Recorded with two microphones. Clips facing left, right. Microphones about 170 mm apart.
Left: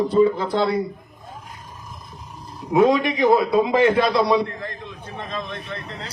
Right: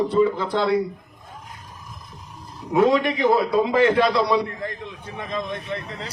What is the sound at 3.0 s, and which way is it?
A man's voice, 15° left (ahead or behind).